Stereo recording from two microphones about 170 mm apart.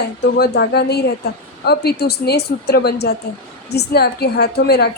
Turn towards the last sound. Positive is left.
turn(degrees=70)  # may be behind; listen again after turning